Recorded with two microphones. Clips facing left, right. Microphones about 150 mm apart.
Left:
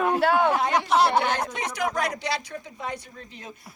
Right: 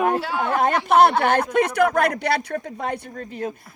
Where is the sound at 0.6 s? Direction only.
55° right (ahead or behind).